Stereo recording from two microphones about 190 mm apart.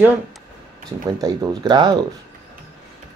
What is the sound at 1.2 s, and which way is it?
Speech, 20° right (ahead or behind).